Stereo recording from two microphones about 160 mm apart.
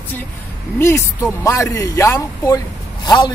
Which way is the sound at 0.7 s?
15° left (ahead or behind).